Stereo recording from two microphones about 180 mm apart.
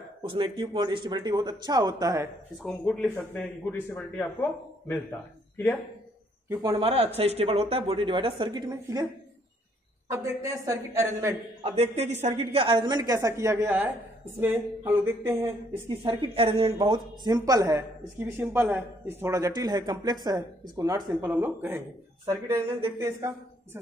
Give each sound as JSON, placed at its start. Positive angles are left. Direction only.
{"t": 0.2, "sound": "speech", "side_deg": -30}
{"t": 2.6, "sound": "speech", "side_deg": 0}
{"t": 6.5, "sound": "speech", "side_deg": -20}
{"t": 6.8, "sound": "speech", "side_deg": -35}
{"t": 10.0, "sound": "a woman's voice", "side_deg": -15}
{"t": 11.6, "sound": "a woman's voice", "side_deg": -35}
{"t": 16.0, "sound": "speech", "side_deg": -30}